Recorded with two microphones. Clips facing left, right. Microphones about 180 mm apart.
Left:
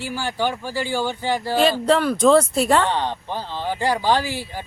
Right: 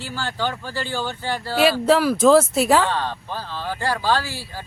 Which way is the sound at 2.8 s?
20° left (ahead or behind).